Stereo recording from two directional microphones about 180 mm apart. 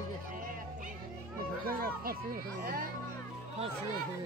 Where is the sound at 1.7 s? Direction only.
55° right (ahead or behind).